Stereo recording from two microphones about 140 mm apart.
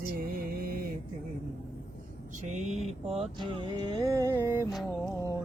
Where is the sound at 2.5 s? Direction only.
55° right (ahead or behind).